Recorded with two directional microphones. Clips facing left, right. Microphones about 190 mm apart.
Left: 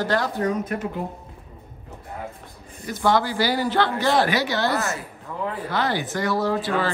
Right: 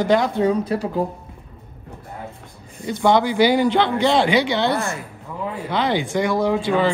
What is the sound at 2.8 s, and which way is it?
Speech, 20° right (ahead or behind).